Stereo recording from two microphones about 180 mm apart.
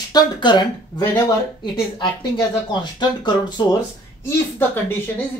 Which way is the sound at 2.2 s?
25° left (ahead or behind).